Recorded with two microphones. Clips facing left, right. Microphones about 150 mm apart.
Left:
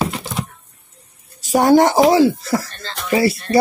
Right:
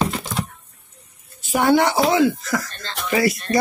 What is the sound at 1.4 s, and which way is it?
Speech, 40° left (ahead or behind).